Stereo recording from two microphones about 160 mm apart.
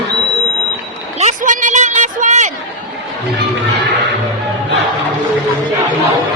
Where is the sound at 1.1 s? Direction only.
50° right (ahead or behind).